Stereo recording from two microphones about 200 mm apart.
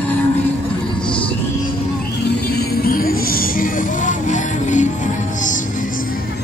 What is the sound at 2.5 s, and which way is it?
Music, 50° left (ahead or behind).